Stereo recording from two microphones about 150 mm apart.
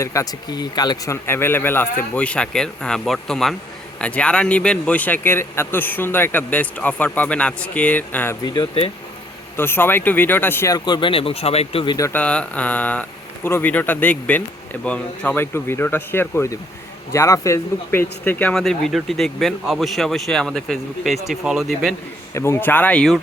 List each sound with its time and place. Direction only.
0.0 s a man's voice: 20° left (ahead or behind)
8.4 s speech: 35° left (ahead or behind)
9.6 s speech: 15° left (ahead or behind); by 11.9 s 35° left (ahead or behind)
11.9 s speech: 20° left (ahead or behind)
12.2 s a man's voice: 10° left (ahead or behind)
22.4 s a man's voice: 15° left (ahead or behind)